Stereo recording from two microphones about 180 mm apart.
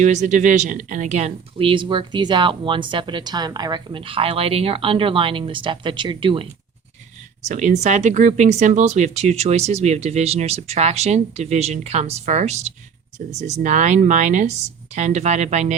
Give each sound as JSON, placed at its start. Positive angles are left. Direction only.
{"t": 0.0, "sound": "speech", "side_deg": -40}
{"t": 7.4, "sound": "speech", "side_deg": -40}